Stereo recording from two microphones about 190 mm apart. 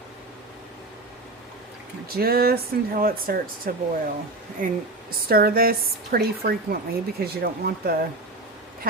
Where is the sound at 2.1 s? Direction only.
55° right (ahead or behind).